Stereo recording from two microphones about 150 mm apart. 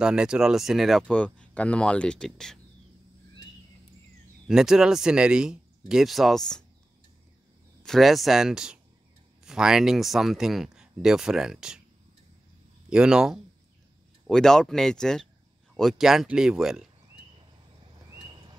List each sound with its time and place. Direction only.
0.0 s speech: 5° right (ahead or behind)
4.5 s speech: 5° right (ahead or behind)
7.8 s speech: centre (ahead or behind)
12.9 s speech: 5° right (ahead or behind)
18.1 s a sound: 25° right (ahead or behind)